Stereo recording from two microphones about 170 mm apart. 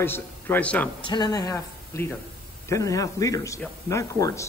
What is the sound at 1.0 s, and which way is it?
Speech, 25° left (ahead or behind).